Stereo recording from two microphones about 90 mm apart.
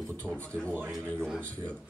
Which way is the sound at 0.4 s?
15° left (ahead or behind).